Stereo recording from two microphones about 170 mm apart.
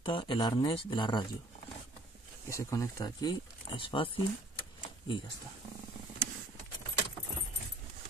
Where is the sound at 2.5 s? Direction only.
15° left (ahead or behind).